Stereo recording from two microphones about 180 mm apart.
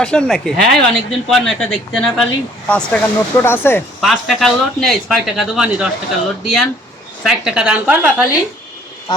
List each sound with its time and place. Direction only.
0.0 s speech: 5° left (ahead or behind)
4.0 s speech: centre (ahead or behind)
9.1 s speech: 20° left (ahead or behind)